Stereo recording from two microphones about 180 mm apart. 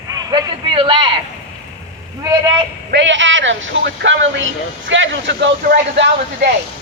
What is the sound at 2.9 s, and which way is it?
A man's voice, 90° right.